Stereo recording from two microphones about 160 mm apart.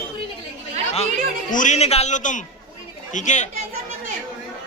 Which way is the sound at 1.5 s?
50° left (ahead or behind).